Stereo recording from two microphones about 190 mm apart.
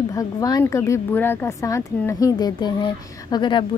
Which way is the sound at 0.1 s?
20° left (ahead or behind).